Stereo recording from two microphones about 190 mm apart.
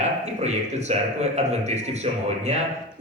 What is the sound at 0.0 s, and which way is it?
A man's voice, 35° right (ahead or behind).